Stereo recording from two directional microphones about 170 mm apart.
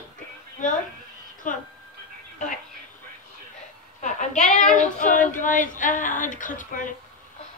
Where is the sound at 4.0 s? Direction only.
45° left (ahead or behind).